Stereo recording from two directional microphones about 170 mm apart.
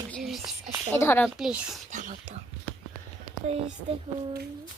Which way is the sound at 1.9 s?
50° right (ahead or behind).